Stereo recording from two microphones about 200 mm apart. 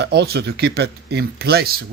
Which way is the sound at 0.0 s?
55° right (ahead or behind).